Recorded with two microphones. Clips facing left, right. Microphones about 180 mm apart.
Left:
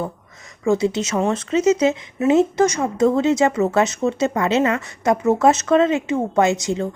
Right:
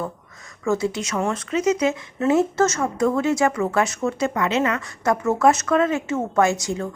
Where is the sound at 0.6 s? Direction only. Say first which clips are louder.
Left 4 dB; 20° left (ahead or behind).